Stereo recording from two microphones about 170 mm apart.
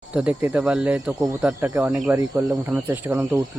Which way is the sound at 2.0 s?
20° right (ahead or behind).